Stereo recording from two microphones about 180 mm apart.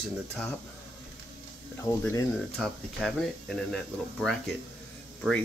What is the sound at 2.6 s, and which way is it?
Speech, centre (ahead or behind).